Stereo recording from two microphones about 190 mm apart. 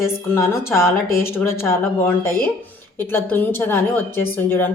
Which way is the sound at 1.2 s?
10° left (ahead or behind).